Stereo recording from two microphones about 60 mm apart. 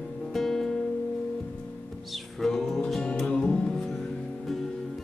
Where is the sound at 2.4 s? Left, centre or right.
Centre.